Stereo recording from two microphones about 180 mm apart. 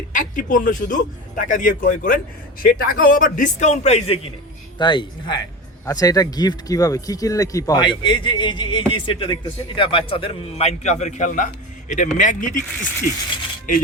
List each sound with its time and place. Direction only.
0.1 s speech: 45° left (ahead or behind)
13.7 s speech: 45° left (ahead or behind)